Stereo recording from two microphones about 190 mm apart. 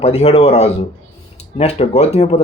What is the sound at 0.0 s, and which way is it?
Speech, 35° left (ahead or behind).